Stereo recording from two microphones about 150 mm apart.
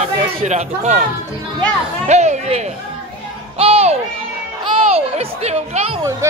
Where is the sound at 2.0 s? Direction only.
50° right (ahead or behind).